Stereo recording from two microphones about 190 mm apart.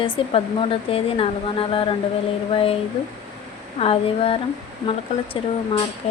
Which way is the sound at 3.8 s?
30° left (ahead or behind).